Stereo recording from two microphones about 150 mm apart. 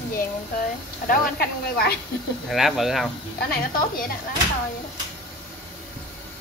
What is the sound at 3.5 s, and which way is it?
Speech, 80° left.